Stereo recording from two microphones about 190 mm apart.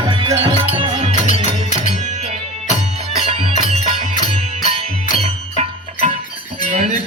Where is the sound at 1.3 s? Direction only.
40° left (ahead or behind).